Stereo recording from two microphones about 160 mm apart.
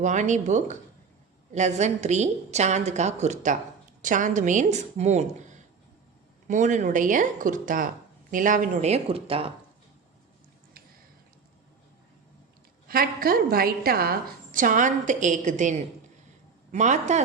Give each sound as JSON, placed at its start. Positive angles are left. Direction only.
{"t": 0.0, "sound": "a woman's voice", "side_deg": -50}
{"t": 12.9, "sound": "a woman's voice", "side_deg": -65}